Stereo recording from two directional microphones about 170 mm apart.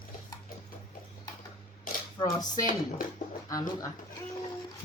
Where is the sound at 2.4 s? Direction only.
50° left (ahead or behind).